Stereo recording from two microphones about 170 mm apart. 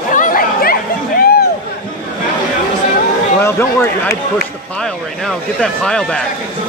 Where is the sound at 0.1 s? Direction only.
50° left (ahead or behind).